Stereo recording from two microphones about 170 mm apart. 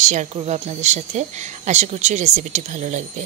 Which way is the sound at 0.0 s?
45° right (ahead or behind).